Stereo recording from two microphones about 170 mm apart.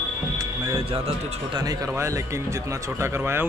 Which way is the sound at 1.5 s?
20° right (ahead or behind).